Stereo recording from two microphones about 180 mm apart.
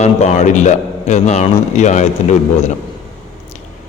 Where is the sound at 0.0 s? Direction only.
40° left (ahead or behind).